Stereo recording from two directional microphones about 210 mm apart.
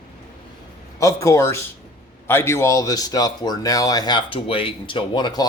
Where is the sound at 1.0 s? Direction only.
15° left (ahead or behind).